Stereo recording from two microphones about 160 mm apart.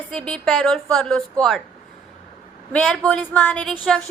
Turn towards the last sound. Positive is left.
turn(degrees=10)  # may be behind; listen again after turning